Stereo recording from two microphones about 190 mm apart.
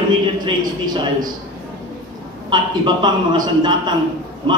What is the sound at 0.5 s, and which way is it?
Speech, 20° right (ahead or behind).